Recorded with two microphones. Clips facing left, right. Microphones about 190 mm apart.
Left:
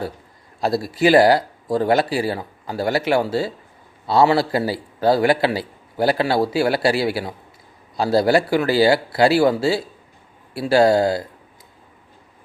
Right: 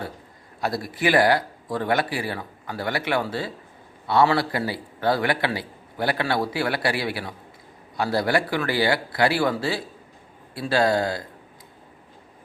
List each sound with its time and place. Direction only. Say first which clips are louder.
0.6 s a man's voice: left 6 dB; 25° left (ahead or behind)